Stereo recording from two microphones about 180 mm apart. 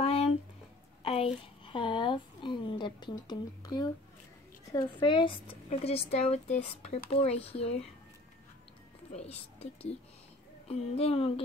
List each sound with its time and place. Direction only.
0.0 s a sound: 35° left (ahead or behind)
4.7 s speech: 25° left (ahead or behind)
9.1 s speech: 35° left (ahead or behind)
10.7 s speech: 35° left (ahead or behind)